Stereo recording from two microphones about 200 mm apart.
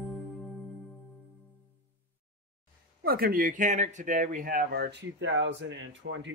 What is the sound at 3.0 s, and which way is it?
Speech, 50° right (ahead or behind).